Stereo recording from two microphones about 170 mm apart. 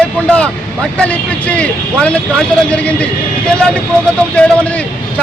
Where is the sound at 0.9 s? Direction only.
10° left (ahead or behind).